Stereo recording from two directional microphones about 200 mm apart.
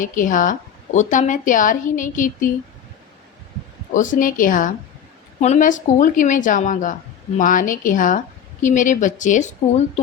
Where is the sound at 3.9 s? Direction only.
40° left (ahead or behind).